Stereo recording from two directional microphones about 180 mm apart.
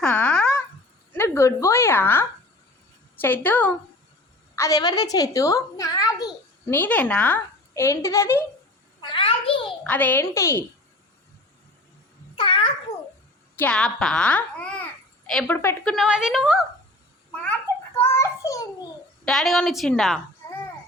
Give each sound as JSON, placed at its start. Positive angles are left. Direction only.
{"t": 0.0, "sound": "a sound", "side_deg": 10}
{"t": 1.1, "sound": "a woman's voice", "side_deg": 15}
{"t": 6.7, "sound": "a woman's voice", "side_deg": 10}
{"t": 9.0, "sound": "a sound", "side_deg": 30}
{"t": 9.8, "sound": "a woman's voice", "side_deg": 10}
{"t": 12.4, "sound": "a sound", "side_deg": 30}
{"t": 13.6, "sound": "a woman's voice", "side_deg": 5}
{"t": 16.0, "sound": "a woman's voice", "side_deg": -5}
{"t": 18.0, "sound": "child singing", "side_deg": 15}
{"t": 19.2, "sound": "a woman's voice", "side_deg": 0}